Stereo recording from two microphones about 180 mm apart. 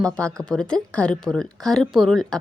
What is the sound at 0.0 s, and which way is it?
Speech, 5° left (ahead or behind).